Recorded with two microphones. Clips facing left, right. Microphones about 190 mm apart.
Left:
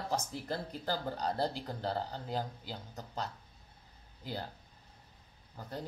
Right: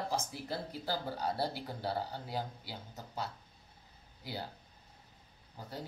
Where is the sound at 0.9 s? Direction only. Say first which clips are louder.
Left 1 dB; 10° right (ahead or behind).